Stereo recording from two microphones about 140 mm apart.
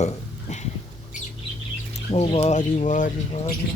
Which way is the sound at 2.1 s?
50° left (ahead or behind).